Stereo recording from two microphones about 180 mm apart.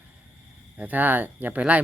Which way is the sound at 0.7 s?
10° right (ahead or behind).